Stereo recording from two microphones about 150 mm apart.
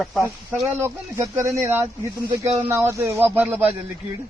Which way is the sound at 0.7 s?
15° right (ahead or behind).